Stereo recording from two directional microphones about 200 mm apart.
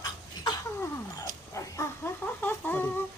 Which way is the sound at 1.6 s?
15° left (ahead or behind).